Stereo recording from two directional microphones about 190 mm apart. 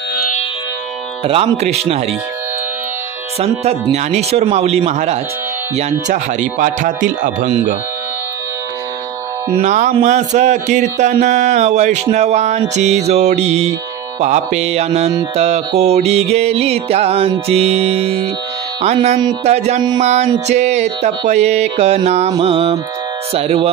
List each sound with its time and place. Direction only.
1.2 s speech: 30° right (ahead or behind)
3.3 s speech: 35° right (ahead or behind)
9.6 s speech: 40° right (ahead or behind)
22.3 s music: 30° right (ahead or behind)
23.3 s speech: 30° right (ahead or behind)